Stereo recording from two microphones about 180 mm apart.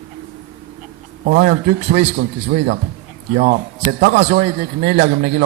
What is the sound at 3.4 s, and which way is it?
A man's voice, 55° right (ahead or behind).